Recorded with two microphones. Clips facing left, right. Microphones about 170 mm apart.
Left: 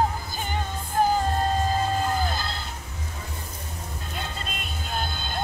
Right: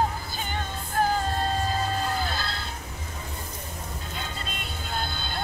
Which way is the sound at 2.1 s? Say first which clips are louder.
Left 2 dB; 15° left (ahead or behind).